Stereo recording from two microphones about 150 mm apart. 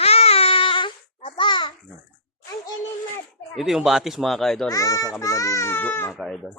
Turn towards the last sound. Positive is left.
turn(degrees=0)  # may be behind; listen again after turning